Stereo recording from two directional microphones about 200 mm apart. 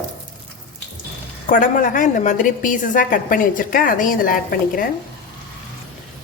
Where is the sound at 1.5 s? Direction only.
40° left (ahead or behind).